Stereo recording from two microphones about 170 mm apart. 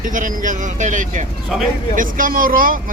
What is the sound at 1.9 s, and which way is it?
Speech, 55° right (ahead or behind).